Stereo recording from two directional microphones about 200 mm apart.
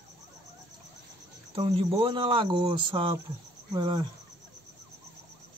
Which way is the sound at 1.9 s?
25° right (ahead or behind).